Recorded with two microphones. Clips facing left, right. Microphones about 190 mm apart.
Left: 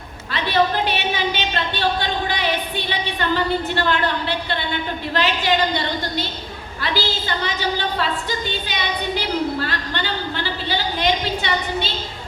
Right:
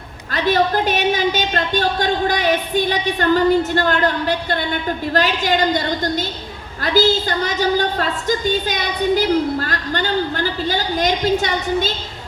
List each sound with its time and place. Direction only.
0.3 s a woman's voice: 45° right (ahead or behind)